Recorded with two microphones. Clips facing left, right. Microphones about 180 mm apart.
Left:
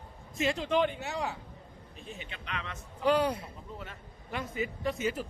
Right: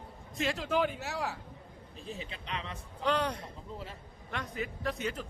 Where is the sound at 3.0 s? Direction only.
10° left (ahead or behind).